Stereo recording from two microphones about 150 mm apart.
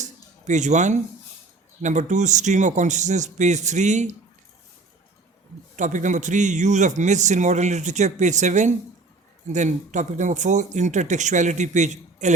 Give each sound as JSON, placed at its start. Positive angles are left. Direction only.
{"t": 0.0, "sound": "music", "side_deg": -50}
{"t": 1.8, "sound": "a man's voice", "side_deg": -55}
{"t": 5.7, "sound": "a man's voice", "side_deg": -55}